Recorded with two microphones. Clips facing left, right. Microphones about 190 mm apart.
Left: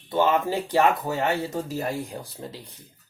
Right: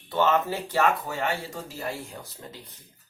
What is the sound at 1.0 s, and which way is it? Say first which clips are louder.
Speech: left 5 dB; 40° left (ahead or behind).